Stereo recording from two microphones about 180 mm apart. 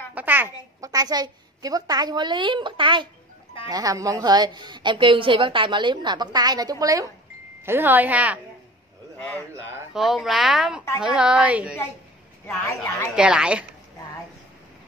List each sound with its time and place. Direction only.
0.1 s a woman's voice: 10° right (ahead or behind)
9.5 s speech: 15° right (ahead or behind)
9.9 s speech: centre (ahead or behind)
12.6 s a woman's voice: 15° left (ahead or behind)
13.1 s speech: 5° right (ahead or behind)